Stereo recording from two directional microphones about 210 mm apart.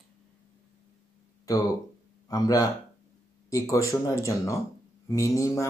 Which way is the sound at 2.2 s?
15° left (ahead or behind).